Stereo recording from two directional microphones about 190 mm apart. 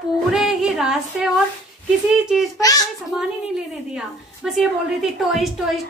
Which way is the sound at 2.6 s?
20° left (ahead or behind).